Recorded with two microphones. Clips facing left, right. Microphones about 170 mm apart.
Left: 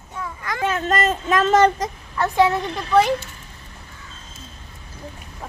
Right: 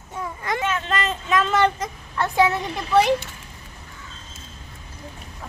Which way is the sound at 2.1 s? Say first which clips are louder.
Left 2 dB; centre (ahead or behind).